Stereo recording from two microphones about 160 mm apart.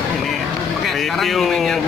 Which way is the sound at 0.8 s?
Centre (ahead or behind).